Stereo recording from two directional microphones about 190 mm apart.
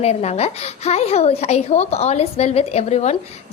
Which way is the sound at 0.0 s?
35° left (ahead or behind).